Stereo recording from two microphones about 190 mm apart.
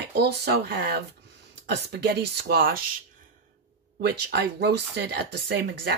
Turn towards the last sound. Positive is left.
turn(degrees=-60)  # may be behind; listen again after turning